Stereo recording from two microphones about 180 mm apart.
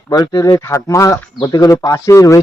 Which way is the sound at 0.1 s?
20° left (ahead or behind).